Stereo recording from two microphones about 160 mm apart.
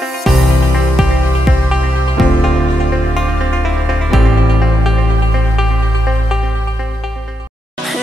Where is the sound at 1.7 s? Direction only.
Centre (ahead or behind).